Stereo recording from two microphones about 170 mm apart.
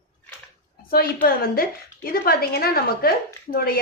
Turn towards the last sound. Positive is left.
turn(degrees=60)  # may be behind; listen again after turning